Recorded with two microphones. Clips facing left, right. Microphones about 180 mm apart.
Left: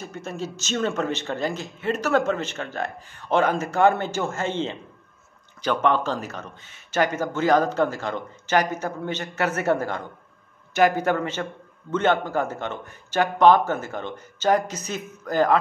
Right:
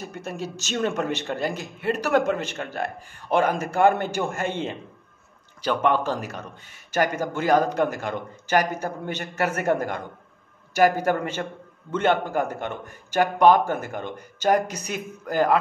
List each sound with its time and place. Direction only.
0.2 s a man's voice: 10° right (ahead or behind)
11.1 s a man's voice: 10° right (ahead or behind)